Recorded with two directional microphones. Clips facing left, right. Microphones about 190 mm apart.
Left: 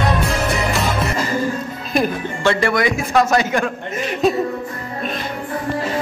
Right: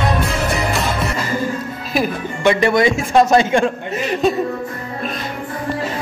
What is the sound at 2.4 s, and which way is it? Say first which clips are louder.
A man's voice: right 3 dB; 20° right (ahead or behind).